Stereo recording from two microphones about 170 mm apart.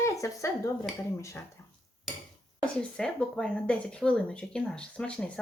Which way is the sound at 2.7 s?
5° left (ahead or behind).